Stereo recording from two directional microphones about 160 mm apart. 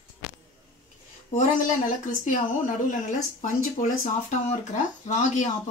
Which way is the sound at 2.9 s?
50° left (ahead or behind).